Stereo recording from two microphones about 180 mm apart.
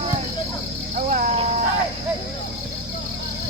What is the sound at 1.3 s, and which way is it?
Vehicle, 35° right (ahead or behind).